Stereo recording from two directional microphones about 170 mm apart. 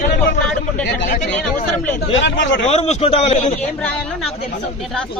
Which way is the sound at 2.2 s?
90° left.